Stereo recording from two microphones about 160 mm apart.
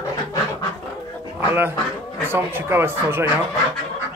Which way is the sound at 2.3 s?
15° right (ahead or behind).